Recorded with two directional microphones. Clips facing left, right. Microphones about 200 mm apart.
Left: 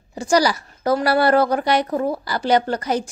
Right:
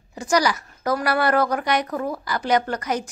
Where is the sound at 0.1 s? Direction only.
30° left (ahead or behind).